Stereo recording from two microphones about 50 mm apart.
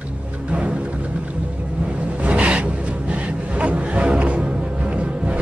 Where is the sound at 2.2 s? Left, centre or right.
Right.